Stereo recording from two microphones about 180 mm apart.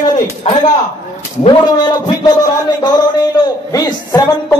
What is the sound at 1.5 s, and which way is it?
A man's voice, 25° left (ahead or behind).